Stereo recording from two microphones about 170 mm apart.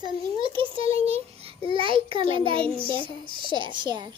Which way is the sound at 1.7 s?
30° right (ahead or behind).